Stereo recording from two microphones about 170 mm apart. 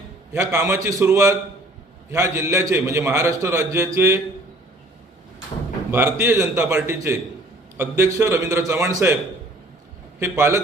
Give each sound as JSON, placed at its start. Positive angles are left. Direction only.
{"t": 0.3, "sound": "a man's voice", "side_deg": -15}
{"t": 5.9, "sound": "a man's voice", "side_deg": -15}
{"t": 10.2, "sound": "a man's voice", "side_deg": -15}